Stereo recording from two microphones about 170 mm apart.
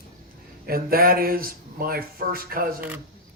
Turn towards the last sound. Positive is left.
turn(degrees=-10)  # may be behind; listen again after turning